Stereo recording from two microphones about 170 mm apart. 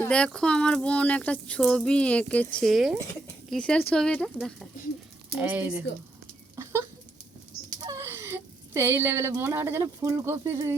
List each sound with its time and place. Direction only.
0.0 s speech: 5° left (ahead or behind)
5.4 s speech: 10° right (ahead or behind)
6.6 s a sound: 15° right (ahead or behind)
7.8 s speech: 20° right (ahead or behind)